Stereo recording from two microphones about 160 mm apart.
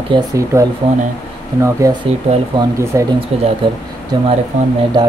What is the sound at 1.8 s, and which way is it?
Speech, 20° right (ahead or behind).